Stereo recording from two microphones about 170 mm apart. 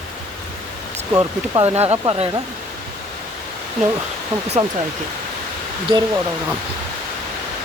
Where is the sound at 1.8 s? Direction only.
35° right (ahead or behind).